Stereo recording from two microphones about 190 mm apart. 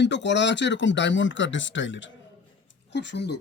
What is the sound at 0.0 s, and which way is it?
Speech, 65° left (ahead or behind).